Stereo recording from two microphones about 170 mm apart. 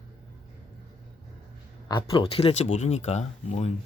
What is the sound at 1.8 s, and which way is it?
Speech, 25° left (ahead or behind).